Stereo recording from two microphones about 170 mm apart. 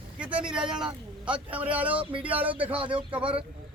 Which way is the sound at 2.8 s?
30° right (ahead or behind).